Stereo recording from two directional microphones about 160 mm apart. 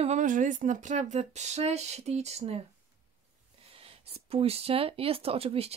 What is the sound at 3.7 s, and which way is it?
Speech, 35° right (ahead or behind).